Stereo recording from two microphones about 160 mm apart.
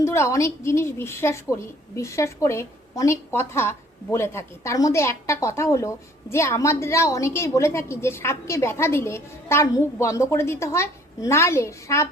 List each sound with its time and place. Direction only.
0.0 s a woman's voice: 15° left (ahead or behind)